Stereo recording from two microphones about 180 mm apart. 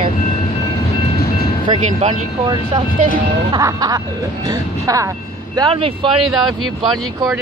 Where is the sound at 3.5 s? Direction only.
20° right (ahead or behind).